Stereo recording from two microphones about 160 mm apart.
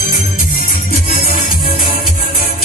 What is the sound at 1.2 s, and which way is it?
Music, 60° left (ahead or behind).